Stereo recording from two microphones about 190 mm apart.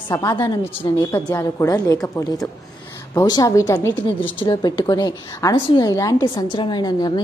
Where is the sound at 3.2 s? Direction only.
20° left (ahead or behind).